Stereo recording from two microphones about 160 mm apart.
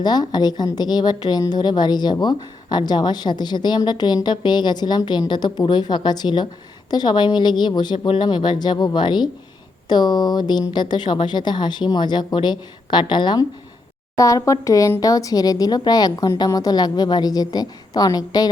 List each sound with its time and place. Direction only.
0.0 s a woman's voice: 25° left (ahead or behind)